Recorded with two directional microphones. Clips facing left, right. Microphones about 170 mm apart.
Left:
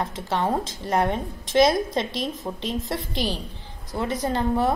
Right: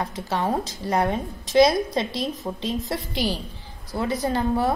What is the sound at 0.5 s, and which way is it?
Speech, 25° left (ahead or behind).